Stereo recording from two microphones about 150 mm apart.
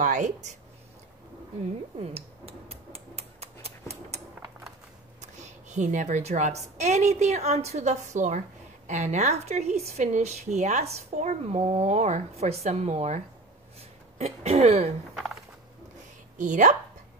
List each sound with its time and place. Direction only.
0.0 s speech: 55° right (ahead or behind)
2.0 s a sound: 45° right (ahead or behind)
5.2 s a woman's voice: 50° right (ahead or behind)
16.3 s speech: 55° right (ahead or behind)